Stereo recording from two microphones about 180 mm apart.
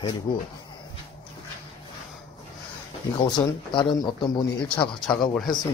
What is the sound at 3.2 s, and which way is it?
Speech, 25° left (ahead or behind).